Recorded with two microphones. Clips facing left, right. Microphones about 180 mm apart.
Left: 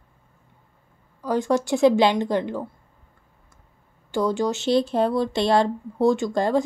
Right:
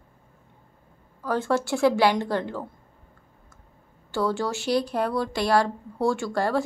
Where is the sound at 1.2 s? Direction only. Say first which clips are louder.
Left 3 dB; 15° left (ahead or behind).